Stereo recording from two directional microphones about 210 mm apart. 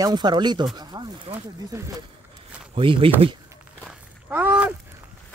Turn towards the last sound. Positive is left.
turn(degrees=-5)  # may be behind; listen again after turning